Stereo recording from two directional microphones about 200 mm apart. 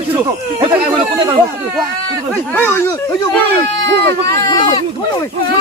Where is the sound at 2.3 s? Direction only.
10° left (ahead or behind).